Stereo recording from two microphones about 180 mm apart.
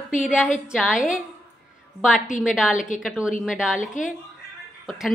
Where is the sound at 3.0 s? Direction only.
5° right (ahead or behind).